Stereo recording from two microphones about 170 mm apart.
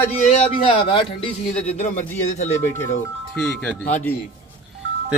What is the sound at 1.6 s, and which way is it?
Speech, 45° left (ahead or behind).